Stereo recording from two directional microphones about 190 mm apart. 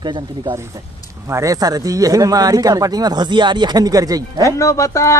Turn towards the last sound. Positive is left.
turn(degrees=15)  # may be behind; listen again after turning